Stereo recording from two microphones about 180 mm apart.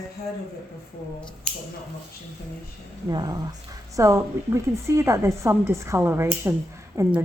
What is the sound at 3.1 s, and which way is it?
A woman's voice, 25° right (ahead or behind).